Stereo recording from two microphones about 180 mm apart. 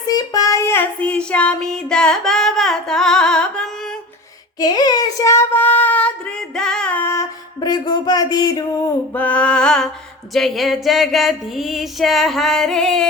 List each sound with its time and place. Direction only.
0.1 s child singing: 20° left (ahead or behind); by 3.7 s 5° left (ahead or behind)
4.6 s child singing: 20° left (ahead or behind)
6.6 s music: 5° left (ahead or behind); by 8.9 s 20° left (ahead or behind)
9.1 s a sound: 10° left (ahead or behind)